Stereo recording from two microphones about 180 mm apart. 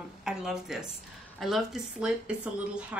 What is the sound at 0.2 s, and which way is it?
Speech, centre (ahead or behind).